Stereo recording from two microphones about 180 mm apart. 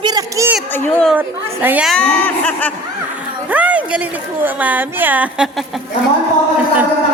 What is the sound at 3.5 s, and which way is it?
A woman's voice, 10° right (ahead or behind).